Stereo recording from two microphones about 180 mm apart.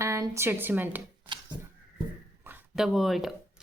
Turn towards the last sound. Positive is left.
turn(degrees=0)  # may be behind; listen again after turning